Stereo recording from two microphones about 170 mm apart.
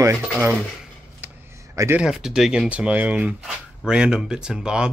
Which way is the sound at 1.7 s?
15° right (ahead or behind).